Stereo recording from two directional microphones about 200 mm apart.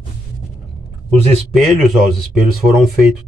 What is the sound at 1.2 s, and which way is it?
Speech, 30° right (ahead or behind).